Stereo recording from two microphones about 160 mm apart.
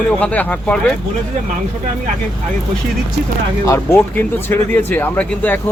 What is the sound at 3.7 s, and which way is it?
Speech, 15° left (ahead or behind).